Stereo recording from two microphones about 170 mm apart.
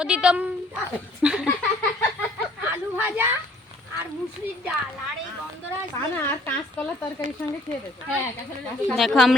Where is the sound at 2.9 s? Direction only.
10° right (ahead or behind).